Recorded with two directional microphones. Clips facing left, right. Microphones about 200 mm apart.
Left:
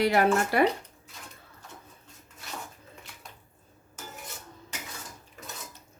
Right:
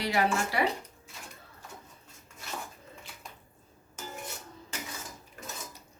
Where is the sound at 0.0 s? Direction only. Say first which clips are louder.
Left 5 dB; 55° left (ahead or behind).